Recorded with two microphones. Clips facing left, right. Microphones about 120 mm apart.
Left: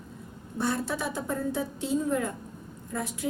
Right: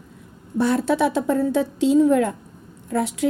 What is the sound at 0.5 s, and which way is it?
A woman's voice, 90° right.